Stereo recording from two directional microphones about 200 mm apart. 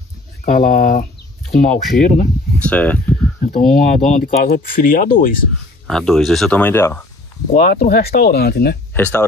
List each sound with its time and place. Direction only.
0.5 s speech: 40° left (ahead or behind)
2.6 s speech: 5° left (ahead or behind)
3.4 s speech: 40° left (ahead or behind)
5.9 s speech: centre (ahead or behind)
7.5 s speech: 50° left (ahead or behind)
8.9 s speech: 10° left (ahead or behind)